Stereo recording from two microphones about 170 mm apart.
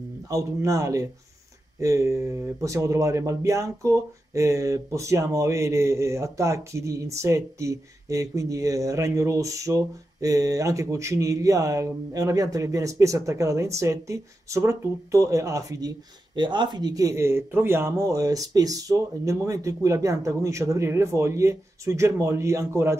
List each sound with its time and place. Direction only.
0.3 s a man's voice: 20° right (ahead or behind)